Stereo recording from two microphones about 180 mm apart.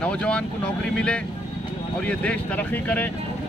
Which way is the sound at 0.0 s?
5° left (ahead or behind).